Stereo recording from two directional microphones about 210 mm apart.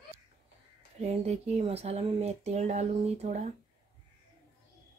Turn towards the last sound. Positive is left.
turn(degrees=-30)  # may be behind; listen again after turning